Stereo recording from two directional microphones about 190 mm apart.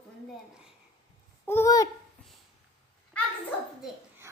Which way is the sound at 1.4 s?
15° left (ahead or behind).